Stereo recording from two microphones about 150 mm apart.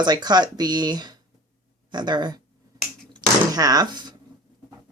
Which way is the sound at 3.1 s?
25° right (ahead or behind).